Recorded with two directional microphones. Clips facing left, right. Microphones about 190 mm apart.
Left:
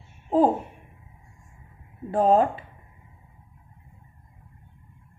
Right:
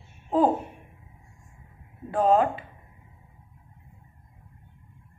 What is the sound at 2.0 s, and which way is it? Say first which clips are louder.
Speech: left 2 dB; 35° left (ahead or behind).